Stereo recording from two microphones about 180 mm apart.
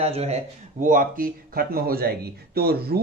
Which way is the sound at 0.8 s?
50° right (ahead or behind).